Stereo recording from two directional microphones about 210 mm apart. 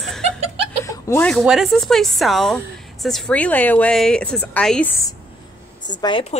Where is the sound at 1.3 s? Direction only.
Centre (ahead or behind).